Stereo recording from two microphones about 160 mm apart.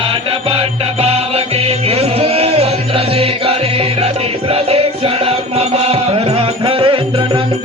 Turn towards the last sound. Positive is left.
turn(degrees=-30)  # may be behind; listen again after turning